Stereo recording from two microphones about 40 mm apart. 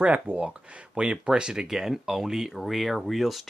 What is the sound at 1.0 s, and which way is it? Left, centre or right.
Speech, right.